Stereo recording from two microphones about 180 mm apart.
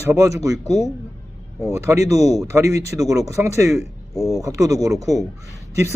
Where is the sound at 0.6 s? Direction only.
35° left (ahead or behind).